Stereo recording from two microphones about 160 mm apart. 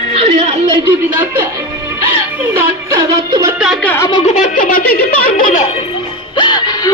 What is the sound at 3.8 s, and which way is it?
Speech, 10° left (ahead or behind).